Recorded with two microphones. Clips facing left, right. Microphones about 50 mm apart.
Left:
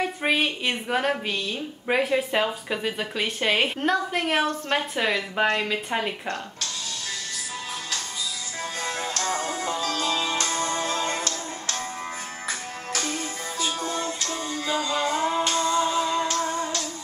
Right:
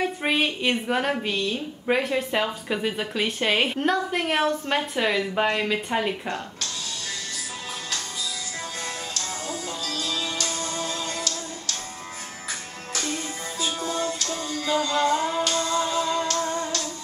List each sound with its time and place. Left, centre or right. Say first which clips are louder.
0.0 s speech: even; centre
8.8 s music: left 5 dB; left; by 16.8 s centre